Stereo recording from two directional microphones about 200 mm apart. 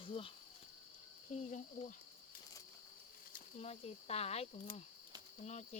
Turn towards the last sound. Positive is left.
turn(degrees=35)  # may be behind; listen again after turning